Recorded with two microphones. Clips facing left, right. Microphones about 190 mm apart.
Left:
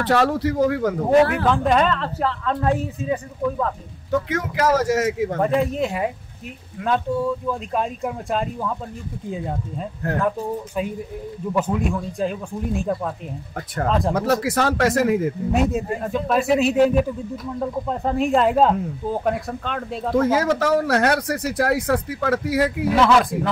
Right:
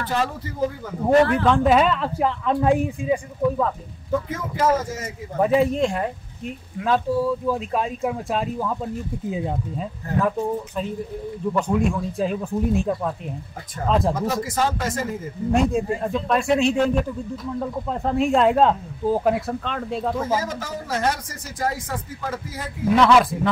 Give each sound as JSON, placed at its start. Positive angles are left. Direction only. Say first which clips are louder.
{"t": 0.0, "sound": "speech", "louder": "left 7 dB", "side_deg": 75}
{"t": 1.2, "sound": "speech", "louder": "right 1 dB", "side_deg": 5}
{"t": 4.1, "sound": "speech", "louder": "left 2 dB", "side_deg": 75}
{"t": 5.4, "sound": "speech", "louder": "right 4 dB", "side_deg": 0}
{"t": 11.5, "sound": "speech", "louder": "even", "side_deg": 5}
{"t": 14.1, "sound": "speech", "louder": "left 4 dB", "side_deg": 70}
{"t": 15.5, "sound": "speech", "louder": "right 3 dB", "side_deg": 5}
{"t": 20.2, "sound": "speech", "louder": "left 6 dB", "side_deg": 70}
{"t": 22.8, "sound": "speech", "louder": "right 3 dB", "side_deg": 0}